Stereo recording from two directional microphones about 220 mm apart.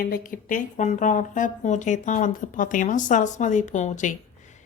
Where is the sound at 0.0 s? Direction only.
40° left (ahead or behind).